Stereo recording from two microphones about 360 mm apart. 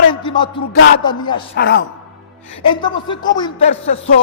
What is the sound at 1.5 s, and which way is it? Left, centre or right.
Speech, left.